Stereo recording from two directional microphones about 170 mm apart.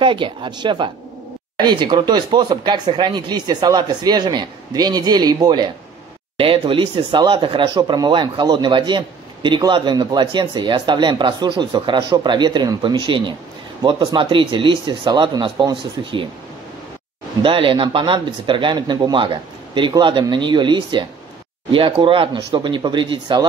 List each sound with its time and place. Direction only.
0.0 s speech: 30° right (ahead or behind)
17.4 s speech: 30° right (ahead or behind)